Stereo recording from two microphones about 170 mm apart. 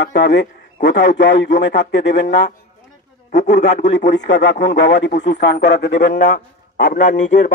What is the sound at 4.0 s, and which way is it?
A man's voice, 90° left.